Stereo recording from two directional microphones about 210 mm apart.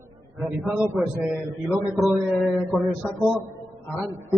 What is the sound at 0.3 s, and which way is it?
A man's voice, centre (ahead or behind).